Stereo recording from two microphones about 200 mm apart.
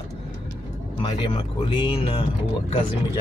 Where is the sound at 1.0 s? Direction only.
25° left (ahead or behind).